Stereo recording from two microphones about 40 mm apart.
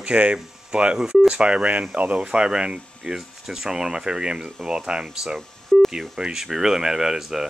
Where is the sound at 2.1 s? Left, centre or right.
Right.